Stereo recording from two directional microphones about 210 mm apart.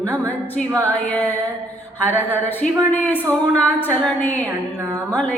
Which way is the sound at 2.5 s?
10° left (ahead or behind).